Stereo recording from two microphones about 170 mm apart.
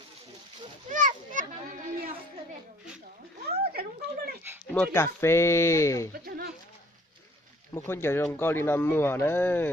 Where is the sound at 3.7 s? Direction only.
65° right (ahead or behind).